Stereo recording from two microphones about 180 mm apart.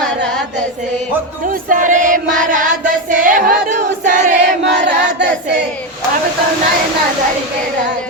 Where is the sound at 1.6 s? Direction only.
45° right (ahead or behind).